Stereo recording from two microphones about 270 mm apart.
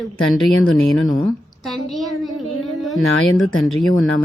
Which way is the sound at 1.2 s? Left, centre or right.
Centre.